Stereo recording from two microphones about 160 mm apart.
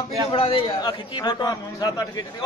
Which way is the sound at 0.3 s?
35° left (ahead or behind).